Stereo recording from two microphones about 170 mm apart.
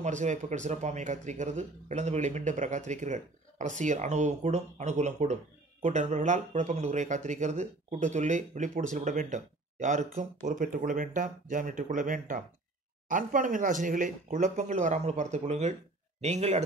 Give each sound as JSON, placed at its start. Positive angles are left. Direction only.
{"t": 0.0, "sound": "speech", "side_deg": -45}